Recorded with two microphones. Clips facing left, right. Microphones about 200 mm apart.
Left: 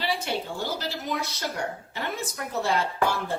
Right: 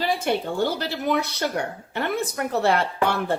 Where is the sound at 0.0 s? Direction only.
55° right (ahead or behind).